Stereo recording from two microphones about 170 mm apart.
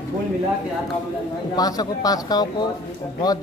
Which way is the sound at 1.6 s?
20° left (ahead or behind).